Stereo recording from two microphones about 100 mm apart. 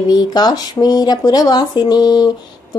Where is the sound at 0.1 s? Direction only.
40° left (ahead or behind).